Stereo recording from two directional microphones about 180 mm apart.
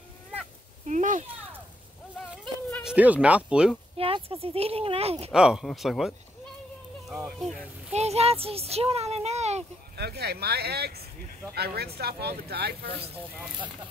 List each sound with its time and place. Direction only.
0.8 s a sound: 45° right (ahead or behind)
2.4 s speech: centre (ahead or behind)
3.9 s speech: 30° right (ahead or behind)
5.3 s speech: 5° right (ahead or behind)
7.9 s speech: 35° right (ahead or behind)
9.9 s speech: 60° right (ahead or behind)